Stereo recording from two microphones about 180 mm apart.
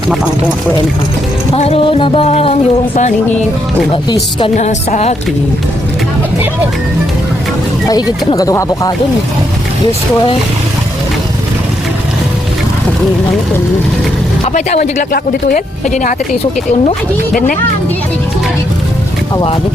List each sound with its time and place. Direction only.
1.5 s speech: 35° left (ahead or behind)
4.5 s speech: 40° left (ahead or behind)
7.9 s speech: 20° left (ahead or behind)
14.4 s speech: 40° left (ahead or behind)
15.1 s speech: 55° left (ahead or behind)